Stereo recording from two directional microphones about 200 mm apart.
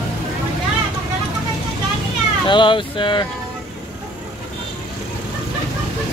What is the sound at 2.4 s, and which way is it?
Speech, 25° left (ahead or behind).